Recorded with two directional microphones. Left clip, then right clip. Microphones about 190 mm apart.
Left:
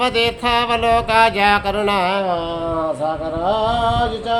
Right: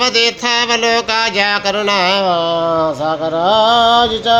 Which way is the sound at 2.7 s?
35° right (ahead or behind).